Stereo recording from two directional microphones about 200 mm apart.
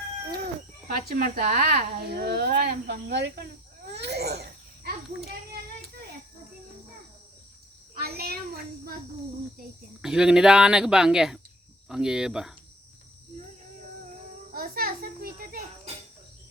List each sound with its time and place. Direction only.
1.1 s speech: 45° right (ahead or behind)
3.9 s babbling: 55° right (ahead or behind)
7.9 s a child's voice: 50° right (ahead or behind)
10.0 s speech: 5° right (ahead or behind)
14.5 s a sound: 45° right (ahead or behind)